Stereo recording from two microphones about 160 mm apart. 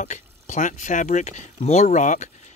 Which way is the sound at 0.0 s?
50° left (ahead or behind).